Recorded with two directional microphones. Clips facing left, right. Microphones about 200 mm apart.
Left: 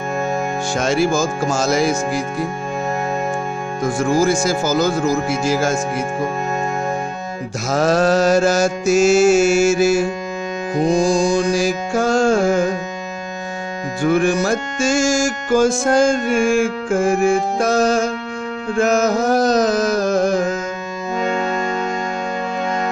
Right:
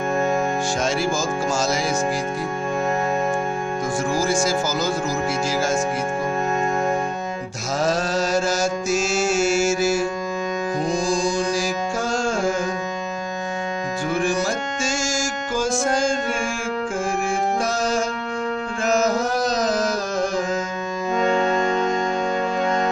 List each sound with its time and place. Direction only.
0.7 s mantra: 60° left (ahead or behind)
4.2 s music: 55° left (ahead or behind)
7.7 s mantra: 60° left (ahead or behind)
11.0 s music: 60° left (ahead or behind)
14.0 s music: 60° left (ahead or behind)
18.8 s carnatic music: 55° left (ahead or behind)